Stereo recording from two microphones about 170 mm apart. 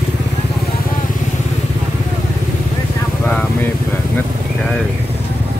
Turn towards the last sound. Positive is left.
turn(degrees=10)  # may be behind; listen again after turning